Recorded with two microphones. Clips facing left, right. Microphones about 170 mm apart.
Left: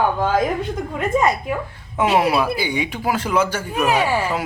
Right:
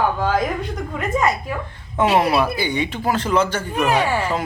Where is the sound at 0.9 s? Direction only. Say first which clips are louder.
Left 2 dB; 20° left (ahead or behind).